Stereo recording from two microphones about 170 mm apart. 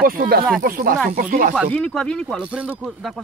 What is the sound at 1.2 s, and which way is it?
Speech, 50° right (ahead or behind).